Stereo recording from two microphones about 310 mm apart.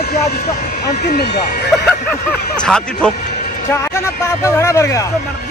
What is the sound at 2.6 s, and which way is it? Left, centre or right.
Speech, centre.